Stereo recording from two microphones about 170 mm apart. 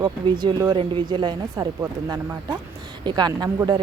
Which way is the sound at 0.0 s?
25° right (ahead or behind).